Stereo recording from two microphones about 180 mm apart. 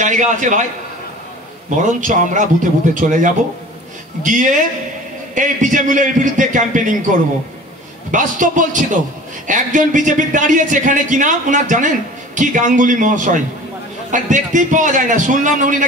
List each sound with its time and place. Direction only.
0.0 s a man's voice: 45° right (ahead or behind)
1.8 s a man's voice: 45° right (ahead or behind)
8.1 s a man's voice: 45° right (ahead or behind)